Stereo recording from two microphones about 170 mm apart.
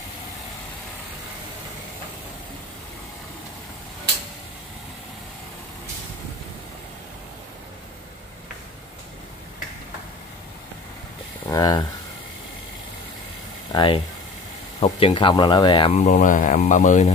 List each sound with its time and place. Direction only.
11.4 s speech: 20° left (ahead or behind)
13.7 s speech: 25° left (ahead or behind)
15.9 s speech: 45° left (ahead or behind)